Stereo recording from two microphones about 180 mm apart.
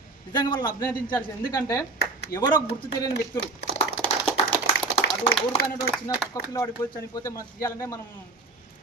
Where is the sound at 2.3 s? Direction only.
55° left (ahead or behind).